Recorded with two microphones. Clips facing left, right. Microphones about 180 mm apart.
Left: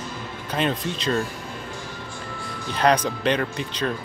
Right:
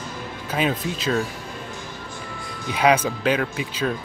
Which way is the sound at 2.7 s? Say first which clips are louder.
Right 1 dB; 5° right (ahead or behind).